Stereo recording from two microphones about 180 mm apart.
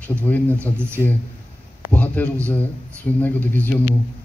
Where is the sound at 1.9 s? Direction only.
10° left (ahead or behind).